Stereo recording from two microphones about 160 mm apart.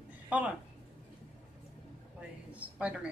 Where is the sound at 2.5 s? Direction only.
10° right (ahead or behind).